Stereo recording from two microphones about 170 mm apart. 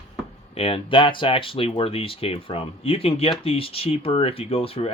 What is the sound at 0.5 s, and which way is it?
Speech, 35° left (ahead or behind).